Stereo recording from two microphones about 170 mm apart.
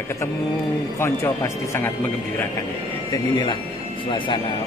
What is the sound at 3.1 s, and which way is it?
Speech, 25° left (ahead or behind).